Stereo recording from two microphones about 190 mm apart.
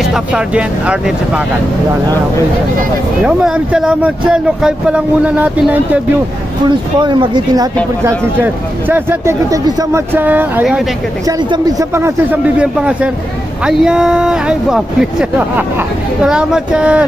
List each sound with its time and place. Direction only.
0.0 s speech: 5° right (ahead or behind)
3.3 s speech: 5° right (ahead or behind)
7.0 s speech: 25° right (ahead or behind); by 10.8 s 10° right (ahead or behind)
11.2 s speech: 20° right (ahead or behind); by 17.0 s 5° right (ahead or behind)